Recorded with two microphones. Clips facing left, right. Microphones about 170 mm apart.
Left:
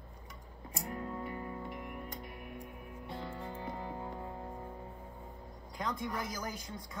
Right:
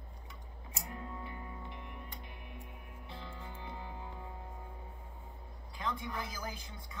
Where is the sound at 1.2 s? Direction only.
45° left (ahead or behind).